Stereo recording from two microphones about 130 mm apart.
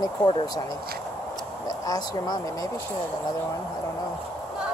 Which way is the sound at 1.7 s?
30° left (ahead or behind).